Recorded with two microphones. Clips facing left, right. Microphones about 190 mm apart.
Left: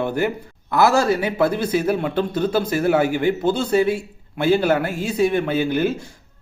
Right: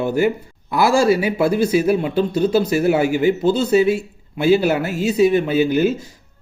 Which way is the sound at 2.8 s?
5° right (ahead or behind).